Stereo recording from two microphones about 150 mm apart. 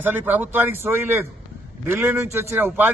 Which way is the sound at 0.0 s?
10° right (ahead or behind).